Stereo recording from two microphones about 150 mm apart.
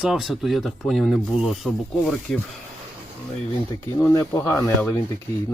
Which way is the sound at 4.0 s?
20° left (ahead or behind).